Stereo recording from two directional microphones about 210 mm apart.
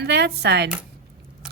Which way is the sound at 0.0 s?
50° right (ahead or behind).